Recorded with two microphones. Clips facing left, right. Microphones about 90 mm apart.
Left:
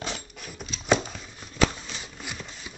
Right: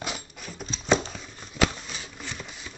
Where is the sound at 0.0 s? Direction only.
5° right (ahead or behind).